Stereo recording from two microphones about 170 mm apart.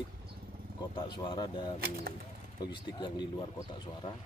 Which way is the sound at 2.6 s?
25° left (ahead or behind).